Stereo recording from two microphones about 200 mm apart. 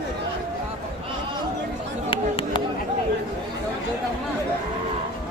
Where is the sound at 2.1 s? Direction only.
25° left (ahead or behind).